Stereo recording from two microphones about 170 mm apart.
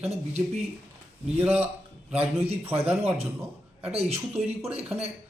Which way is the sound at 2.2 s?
35° right (ahead or behind).